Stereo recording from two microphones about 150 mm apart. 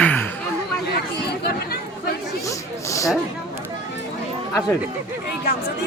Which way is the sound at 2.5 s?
20° left (ahead or behind).